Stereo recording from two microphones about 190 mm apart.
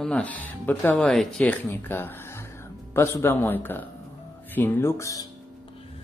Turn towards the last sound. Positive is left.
turn(degrees=15)  # may be behind; listen again after turning